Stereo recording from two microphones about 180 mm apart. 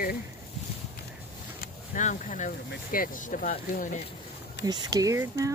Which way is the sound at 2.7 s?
50° left (ahead or behind).